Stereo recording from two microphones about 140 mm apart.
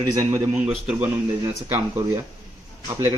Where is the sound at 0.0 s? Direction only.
25° right (ahead or behind).